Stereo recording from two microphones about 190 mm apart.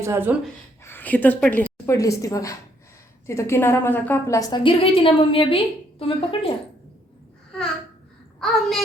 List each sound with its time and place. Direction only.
0.0 s speech: 10° right (ahead or behind)
0.9 s a woman's voice: 10° left (ahead or behind); by 6.5 s 30° left (ahead or behind)
8.4 s a child's voice: centre (ahead or behind)